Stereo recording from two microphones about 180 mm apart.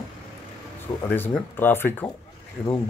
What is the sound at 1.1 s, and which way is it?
Speech, 10° left (ahead or behind).